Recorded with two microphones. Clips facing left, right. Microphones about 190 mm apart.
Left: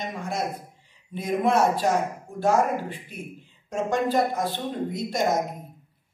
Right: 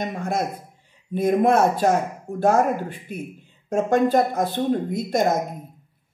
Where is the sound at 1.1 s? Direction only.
50° right (ahead or behind).